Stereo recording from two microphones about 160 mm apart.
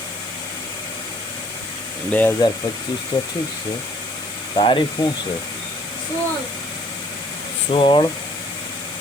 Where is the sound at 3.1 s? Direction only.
30° left (ahead or behind).